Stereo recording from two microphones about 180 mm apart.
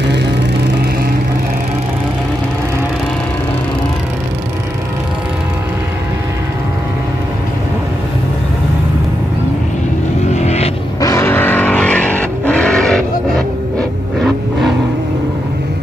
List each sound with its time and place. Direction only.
10.3 s vehicle: 40° left (ahead or behind)
11.0 s vehicle: 15° left (ahead or behind)